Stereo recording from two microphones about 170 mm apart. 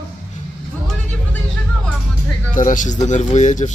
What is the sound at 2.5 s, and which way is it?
Speech, 50° left (ahead or behind).